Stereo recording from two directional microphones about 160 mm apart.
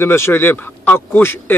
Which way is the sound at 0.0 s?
15° left (ahead or behind).